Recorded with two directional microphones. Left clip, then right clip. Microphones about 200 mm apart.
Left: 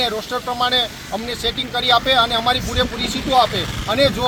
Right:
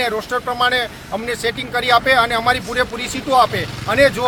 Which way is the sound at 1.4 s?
5° right (ahead or behind).